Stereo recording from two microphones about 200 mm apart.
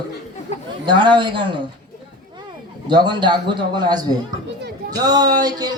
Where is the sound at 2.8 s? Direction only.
20° right (ahead or behind).